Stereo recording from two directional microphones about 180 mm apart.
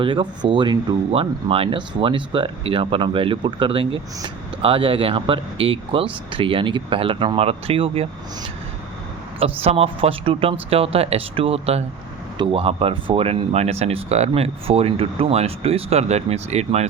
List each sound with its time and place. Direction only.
0.0 s speech: 25° right (ahead or behind)
9.4 s speech: 35° right (ahead or behind)